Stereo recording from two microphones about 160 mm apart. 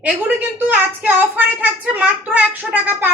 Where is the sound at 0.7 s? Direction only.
10° right (ahead or behind).